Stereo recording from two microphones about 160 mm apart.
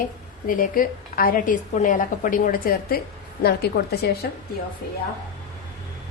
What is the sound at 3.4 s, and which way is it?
Speech, 80° left.